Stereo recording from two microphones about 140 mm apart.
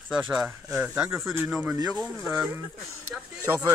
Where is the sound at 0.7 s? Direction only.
5° right (ahead or behind).